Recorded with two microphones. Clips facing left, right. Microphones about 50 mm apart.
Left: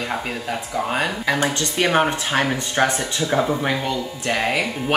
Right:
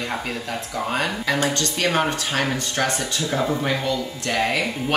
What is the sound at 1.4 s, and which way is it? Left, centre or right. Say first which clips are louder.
A woman's voice: left 2 dB; left.